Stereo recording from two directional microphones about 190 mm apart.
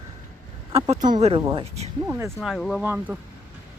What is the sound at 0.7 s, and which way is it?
Speech, 25° right (ahead or behind).